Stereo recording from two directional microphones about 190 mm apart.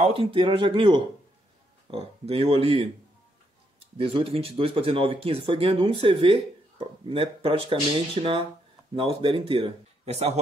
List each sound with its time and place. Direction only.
0.0 s speech: 30° right (ahead or behind)
4.0 s speech: 30° right (ahead or behind)